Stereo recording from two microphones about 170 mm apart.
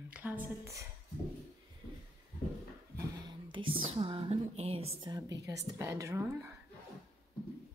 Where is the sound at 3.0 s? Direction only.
25° right (ahead or behind).